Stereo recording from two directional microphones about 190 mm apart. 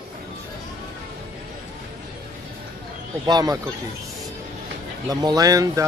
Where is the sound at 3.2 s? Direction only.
20° right (ahead or behind).